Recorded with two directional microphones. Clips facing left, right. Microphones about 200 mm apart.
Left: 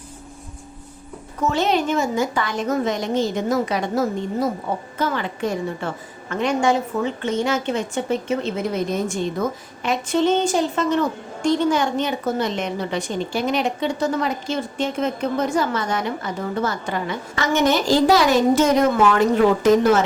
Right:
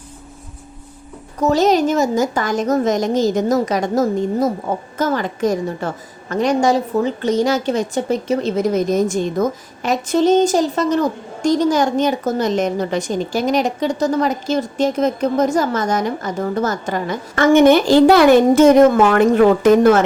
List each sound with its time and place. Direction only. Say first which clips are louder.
1.4 s a woman's voice: right 6 dB; 40° right (ahead or behind); by 20.0 s 55° right (ahead or behind)